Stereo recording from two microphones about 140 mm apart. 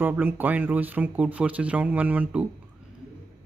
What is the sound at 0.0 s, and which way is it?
Speech, 15° right (ahead or behind).